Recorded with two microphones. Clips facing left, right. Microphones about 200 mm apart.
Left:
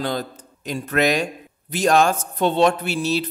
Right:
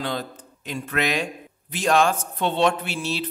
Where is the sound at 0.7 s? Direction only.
40° left (ahead or behind).